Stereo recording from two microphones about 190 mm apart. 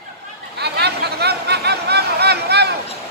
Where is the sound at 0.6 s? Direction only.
60° right (ahead or behind).